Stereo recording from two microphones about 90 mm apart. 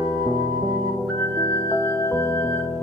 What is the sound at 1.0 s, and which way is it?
Music, 20° left (ahead or behind).